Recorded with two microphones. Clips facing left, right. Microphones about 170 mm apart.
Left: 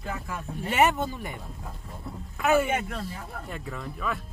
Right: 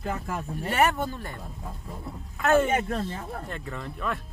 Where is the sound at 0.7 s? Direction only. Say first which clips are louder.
Left 1 dB; 20° left (ahead or behind).